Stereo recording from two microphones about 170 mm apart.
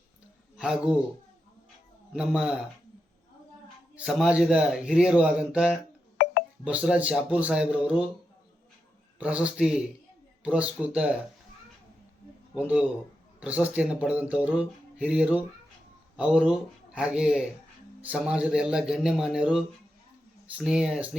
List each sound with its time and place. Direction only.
0.5 s a man's voice: 5° right (ahead or behind)
2.1 s a man's voice: 5° right (ahead or behind)
3.9 s a man's voice: 5° right (ahead or behind)
9.1 s speech: 5° right (ahead or behind)
12.5 s a man's voice: 10° right (ahead or behind)
20.7 s a man's voice: 5° right (ahead or behind)